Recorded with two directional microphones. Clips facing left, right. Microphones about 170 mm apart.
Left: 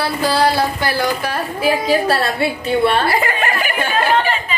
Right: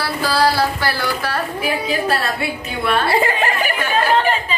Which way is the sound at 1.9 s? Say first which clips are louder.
Left 4 dB; 35° left (ahead or behind).